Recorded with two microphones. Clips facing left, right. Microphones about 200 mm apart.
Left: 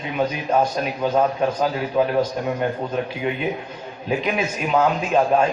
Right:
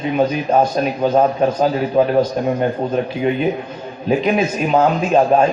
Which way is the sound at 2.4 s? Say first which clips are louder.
Right 5 dB; 40° right (ahead or behind).